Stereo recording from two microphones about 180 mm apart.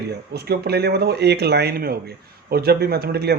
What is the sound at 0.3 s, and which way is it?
Speech, 60° right (ahead or behind).